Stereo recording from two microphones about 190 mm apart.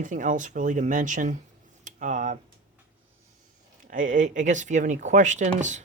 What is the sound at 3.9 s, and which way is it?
Speech, 45° right (ahead or behind).